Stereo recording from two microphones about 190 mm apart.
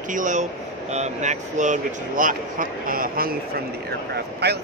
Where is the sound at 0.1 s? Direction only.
40° right (ahead or behind).